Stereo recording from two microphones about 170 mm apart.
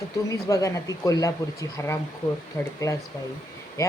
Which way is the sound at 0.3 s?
20° left (ahead or behind).